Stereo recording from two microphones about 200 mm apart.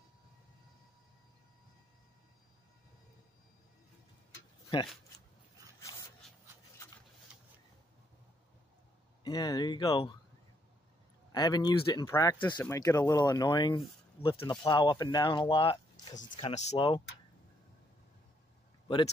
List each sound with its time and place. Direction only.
5.8 s dog: 15° left (ahead or behind)
9.2 s speech: 20° left (ahead or behind)
11.3 s speech: 20° left (ahead or behind)